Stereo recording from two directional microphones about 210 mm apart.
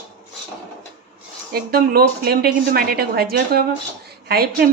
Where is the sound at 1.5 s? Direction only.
45° right (ahead or behind).